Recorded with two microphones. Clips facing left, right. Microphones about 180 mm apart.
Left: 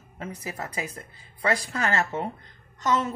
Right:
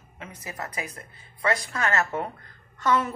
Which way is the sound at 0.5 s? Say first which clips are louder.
Left 1 dB; 30° left (ahead or behind).